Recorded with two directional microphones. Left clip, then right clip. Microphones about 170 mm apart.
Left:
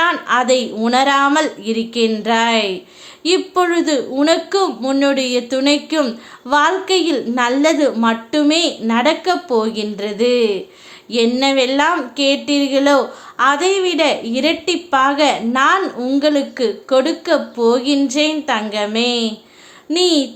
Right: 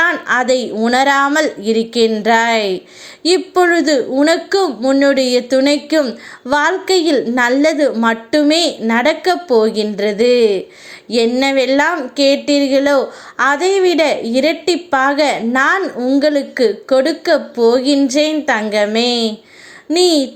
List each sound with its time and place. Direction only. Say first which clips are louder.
0.0 s a woman's voice: right 1 dB; 15° right (ahead or behind)